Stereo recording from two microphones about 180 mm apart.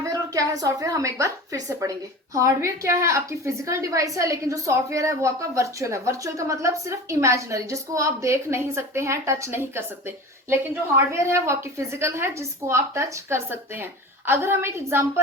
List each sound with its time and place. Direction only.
0.0 s a woman's voice: 20° right (ahead or behind)